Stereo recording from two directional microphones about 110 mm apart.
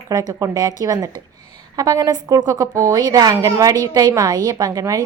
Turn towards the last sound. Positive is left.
turn(degrees=-30)  # may be behind; listen again after turning